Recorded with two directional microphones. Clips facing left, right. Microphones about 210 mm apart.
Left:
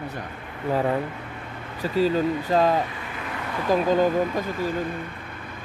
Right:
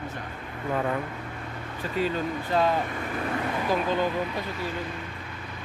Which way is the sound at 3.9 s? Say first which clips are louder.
Left 6 dB; 45° left (ahead or behind).